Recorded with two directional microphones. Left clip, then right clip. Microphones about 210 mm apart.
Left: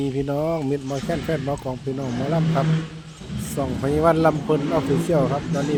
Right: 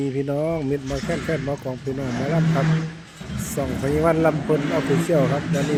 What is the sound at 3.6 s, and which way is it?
Speech, 5° left (ahead or behind).